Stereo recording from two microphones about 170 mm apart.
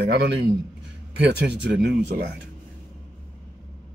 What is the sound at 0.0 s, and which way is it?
Speech, 85° right.